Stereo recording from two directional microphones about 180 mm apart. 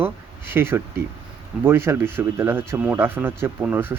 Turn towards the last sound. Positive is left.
turn(degrees=-10)  # may be behind; listen again after turning